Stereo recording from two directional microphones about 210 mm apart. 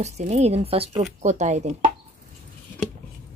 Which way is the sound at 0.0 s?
30° right (ahead or behind).